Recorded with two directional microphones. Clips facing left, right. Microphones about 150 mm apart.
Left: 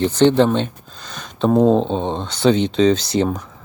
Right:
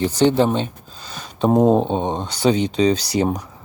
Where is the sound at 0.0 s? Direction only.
10° right (ahead or behind).